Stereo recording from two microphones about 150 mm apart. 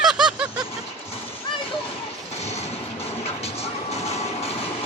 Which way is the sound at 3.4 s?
45° left (ahead or behind).